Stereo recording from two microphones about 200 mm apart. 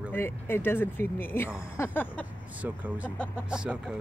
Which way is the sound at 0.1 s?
10° left (ahead or behind).